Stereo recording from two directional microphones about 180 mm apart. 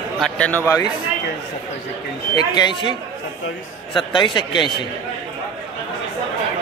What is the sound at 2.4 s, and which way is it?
Speech, 25° left (ahead or behind).